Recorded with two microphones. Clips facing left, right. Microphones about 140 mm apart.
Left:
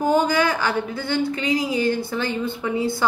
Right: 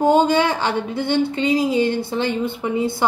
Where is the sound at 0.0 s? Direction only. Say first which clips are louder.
Right 4 dB; 25° right (ahead or behind).